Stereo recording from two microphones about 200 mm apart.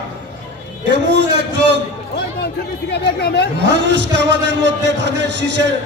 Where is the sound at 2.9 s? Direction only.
55° left (ahead or behind).